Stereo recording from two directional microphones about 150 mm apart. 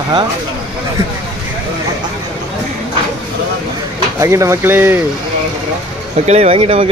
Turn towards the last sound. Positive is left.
turn(degrees=-40)  # may be behind; listen again after turning